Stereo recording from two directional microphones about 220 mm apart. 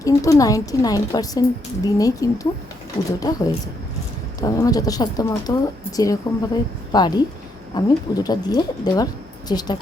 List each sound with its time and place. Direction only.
0.0 s a woman's voice: 15° left (ahead or behind)